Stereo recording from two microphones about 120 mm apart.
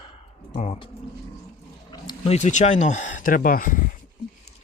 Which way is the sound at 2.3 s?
80° left.